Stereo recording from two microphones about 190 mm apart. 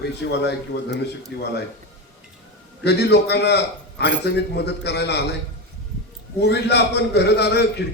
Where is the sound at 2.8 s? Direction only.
60° left (ahead or behind).